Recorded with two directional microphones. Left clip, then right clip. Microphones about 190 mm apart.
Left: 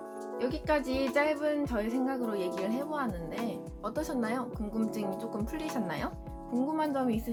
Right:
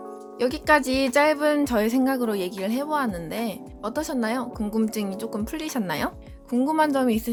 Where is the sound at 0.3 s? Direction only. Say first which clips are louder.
Right 10 dB; 45° right (ahead or behind).